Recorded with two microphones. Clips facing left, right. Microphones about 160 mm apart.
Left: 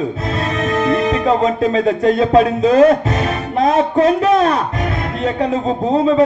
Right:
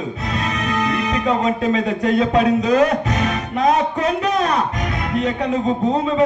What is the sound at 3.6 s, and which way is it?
Speech, 35° left (ahead or behind).